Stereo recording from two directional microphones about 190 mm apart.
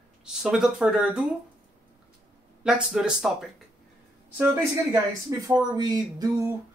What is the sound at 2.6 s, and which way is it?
Speech, 5° right (ahead or behind).